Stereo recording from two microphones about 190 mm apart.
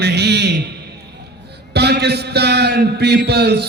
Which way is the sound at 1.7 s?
60° right (ahead or behind).